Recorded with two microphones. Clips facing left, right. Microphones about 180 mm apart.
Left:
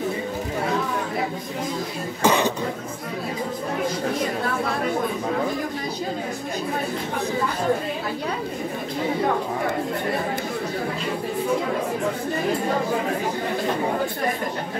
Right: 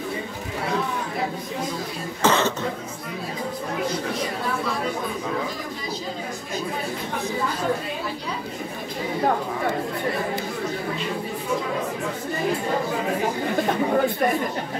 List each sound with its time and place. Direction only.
2.2 s speech: 15° left (ahead or behind)